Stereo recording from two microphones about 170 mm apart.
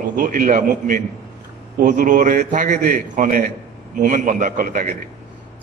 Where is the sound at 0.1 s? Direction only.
55° right (ahead or behind).